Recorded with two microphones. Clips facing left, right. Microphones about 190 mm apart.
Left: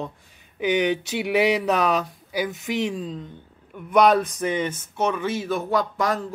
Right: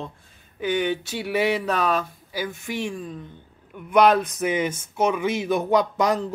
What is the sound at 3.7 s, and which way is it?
Speech, 5° right (ahead or behind).